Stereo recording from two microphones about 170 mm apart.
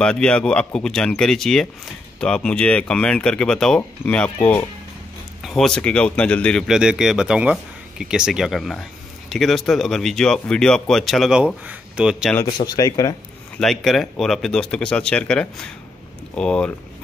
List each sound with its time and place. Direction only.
0.0 s speech: 5° left (ahead or behind)
6.7 s speech: 5° right (ahead or behind)
12.4 s speech: 25° left (ahead or behind)
13.6 s speech: centre (ahead or behind)